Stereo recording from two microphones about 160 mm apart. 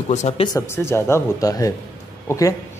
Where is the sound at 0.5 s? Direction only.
15° left (ahead or behind).